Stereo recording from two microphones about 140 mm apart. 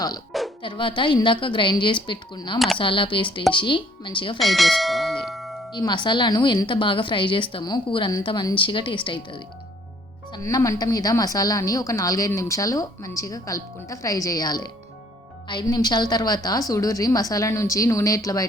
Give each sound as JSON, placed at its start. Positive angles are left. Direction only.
{"t": 0.6, "sound": "a woman's voice", "side_deg": 35}
{"t": 4.4, "sound": "bell", "side_deg": 0}
{"t": 5.7, "sound": "a woman's voice", "side_deg": 35}
{"t": 10.3, "sound": "a woman's voice", "side_deg": 25}